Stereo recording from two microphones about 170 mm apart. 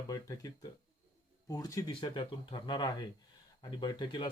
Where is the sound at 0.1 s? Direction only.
20° left (ahead or behind).